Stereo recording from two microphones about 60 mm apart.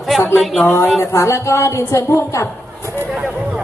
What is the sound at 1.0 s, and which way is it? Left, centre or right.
A woman's voice, left.